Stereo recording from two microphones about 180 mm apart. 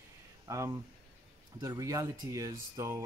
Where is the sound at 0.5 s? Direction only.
20° right (ahead or behind).